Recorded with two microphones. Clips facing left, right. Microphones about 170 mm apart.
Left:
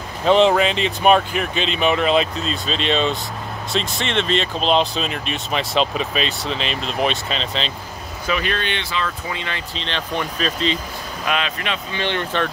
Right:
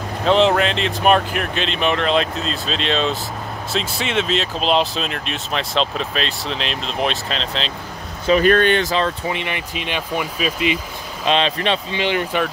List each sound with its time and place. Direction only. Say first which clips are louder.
0.2 s speech: left 1 dB; 5° left (ahead or behind)
8.3 s speech: right 9 dB; 45° right (ahead or behind)
9.3 s speech: right 3 dB; 20° right (ahead or behind)
11.2 s speech: right 6 dB; 30° right (ahead or behind)
11.9 s speech: right 3 dB; 10° right (ahead or behind)